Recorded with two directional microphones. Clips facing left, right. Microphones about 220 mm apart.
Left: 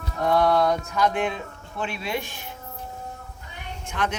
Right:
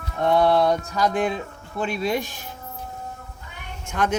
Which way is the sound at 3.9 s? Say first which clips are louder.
Right 4 dB; 45° right (ahead or behind).